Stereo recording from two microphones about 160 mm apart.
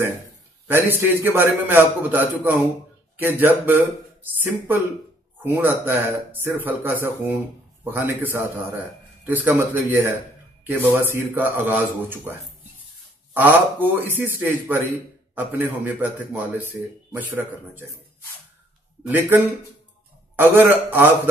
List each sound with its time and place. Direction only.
0.7 s a man's voice: 15° right (ahead or behind)
11.1 s speech: 10° right (ahead or behind)
19.0 s speech: 15° right (ahead or behind)